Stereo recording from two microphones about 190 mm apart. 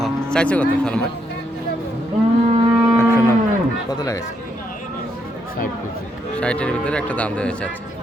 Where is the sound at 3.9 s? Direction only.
20° left (ahead or behind).